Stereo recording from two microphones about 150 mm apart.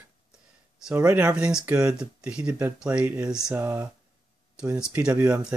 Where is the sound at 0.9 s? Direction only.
15° right (ahead or behind).